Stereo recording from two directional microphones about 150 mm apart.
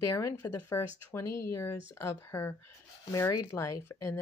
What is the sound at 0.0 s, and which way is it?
Speech, 20° left (ahead or behind).